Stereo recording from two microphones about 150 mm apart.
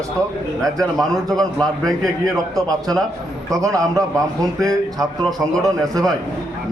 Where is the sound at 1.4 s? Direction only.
5° left (ahead or behind).